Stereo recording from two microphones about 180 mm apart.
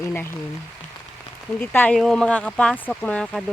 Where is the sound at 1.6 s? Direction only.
10° left (ahead or behind).